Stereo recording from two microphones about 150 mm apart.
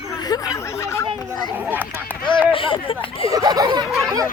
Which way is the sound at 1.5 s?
10° right (ahead or behind).